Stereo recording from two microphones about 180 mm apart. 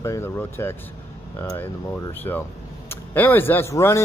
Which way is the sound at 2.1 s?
10° left (ahead or behind).